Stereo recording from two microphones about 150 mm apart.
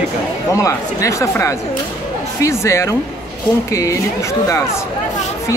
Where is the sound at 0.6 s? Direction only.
20° left (ahead or behind).